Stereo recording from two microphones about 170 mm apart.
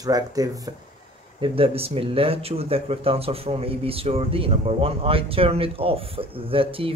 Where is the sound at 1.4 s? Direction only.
35° right (ahead or behind).